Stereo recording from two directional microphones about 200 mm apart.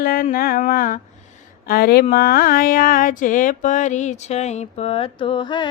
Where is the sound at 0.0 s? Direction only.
45° left (ahead or behind).